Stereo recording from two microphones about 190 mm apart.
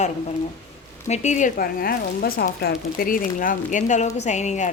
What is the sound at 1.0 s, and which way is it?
A woman's voice, 40° left (ahead or behind).